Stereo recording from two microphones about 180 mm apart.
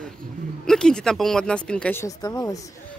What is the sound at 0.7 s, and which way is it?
Speech, 5° left (ahead or behind).